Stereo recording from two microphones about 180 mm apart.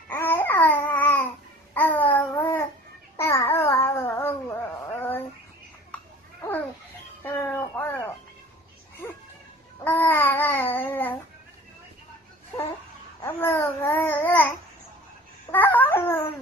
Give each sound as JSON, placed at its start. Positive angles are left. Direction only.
{"t": 0.1, "sound": "babbling", "side_deg": 10}
{"t": 7.2, "sound": "music", "side_deg": 10}
{"t": 9.8, "sound": "babbling", "side_deg": 10}
{"t": 13.2, "sound": "babbling", "side_deg": 10}
{"t": 15.5, "sound": "babbling", "side_deg": 10}